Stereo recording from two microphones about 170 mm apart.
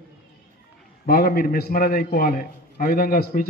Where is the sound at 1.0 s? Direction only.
60° left (ahead or behind).